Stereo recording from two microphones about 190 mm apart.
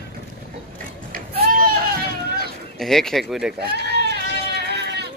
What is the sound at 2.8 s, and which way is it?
Speech, centre (ahead or behind).